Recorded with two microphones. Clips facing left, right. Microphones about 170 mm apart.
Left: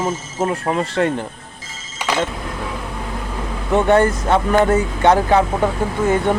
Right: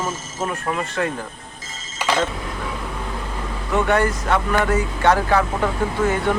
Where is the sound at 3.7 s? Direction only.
25° left (ahead or behind).